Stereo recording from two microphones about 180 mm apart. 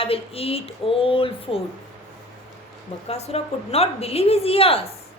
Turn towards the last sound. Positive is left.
turn(degrees=30)  # may be behind; listen again after turning